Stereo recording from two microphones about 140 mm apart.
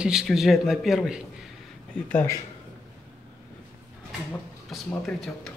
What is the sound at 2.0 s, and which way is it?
Speech, 15° left (ahead or behind).